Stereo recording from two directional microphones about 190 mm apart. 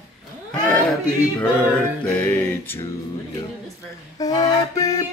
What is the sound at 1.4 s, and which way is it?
Music, 10° left (ahead or behind).